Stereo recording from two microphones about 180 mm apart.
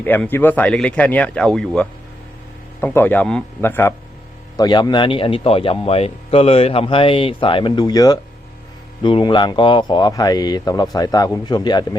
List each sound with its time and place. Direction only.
0.0 s speech: 10° left (ahead or behind)
4.5 s a man's voice: 25° left (ahead or behind)